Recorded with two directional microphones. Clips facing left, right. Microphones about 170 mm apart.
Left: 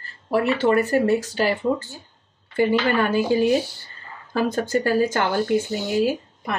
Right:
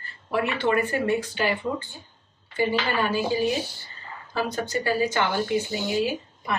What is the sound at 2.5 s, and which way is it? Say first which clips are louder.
Speech: left 5 dB; 55° left (ahead or behind).